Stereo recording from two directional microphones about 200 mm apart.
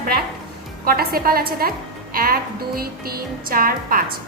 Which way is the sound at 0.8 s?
45° right (ahead or behind).